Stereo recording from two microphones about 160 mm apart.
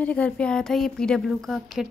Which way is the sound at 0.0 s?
10° left (ahead or behind).